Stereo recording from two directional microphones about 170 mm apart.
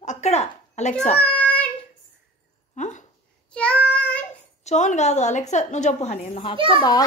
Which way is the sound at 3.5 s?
5° left (ahead or behind).